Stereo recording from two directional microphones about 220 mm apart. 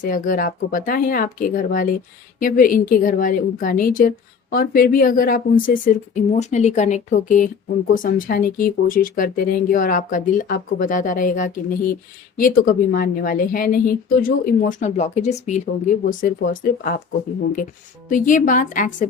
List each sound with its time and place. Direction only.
0.0 s a woman's voice: 35° left (ahead or behind)
18.1 s a woman's voice: 35° left (ahead or behind)